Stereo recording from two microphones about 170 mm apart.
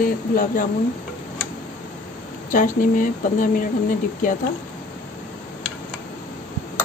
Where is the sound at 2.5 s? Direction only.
50° left (ahead or behind).